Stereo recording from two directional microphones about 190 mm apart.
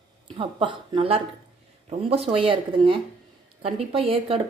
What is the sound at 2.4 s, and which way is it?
Speech, 30° right (ahead or behind).